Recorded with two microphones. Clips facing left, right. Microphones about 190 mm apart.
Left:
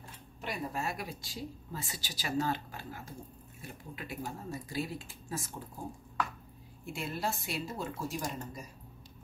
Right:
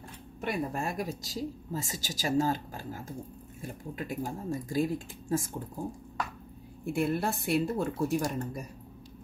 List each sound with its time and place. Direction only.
0.4 s speech: 50° right (ahead or behind)
6.9 s speech: 55° right (ahead or behind)